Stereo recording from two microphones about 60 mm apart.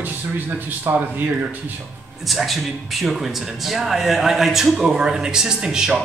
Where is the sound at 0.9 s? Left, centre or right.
Right.